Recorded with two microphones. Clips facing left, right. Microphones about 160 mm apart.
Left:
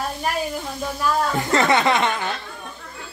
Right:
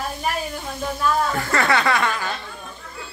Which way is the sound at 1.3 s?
20° left (ahead or behind).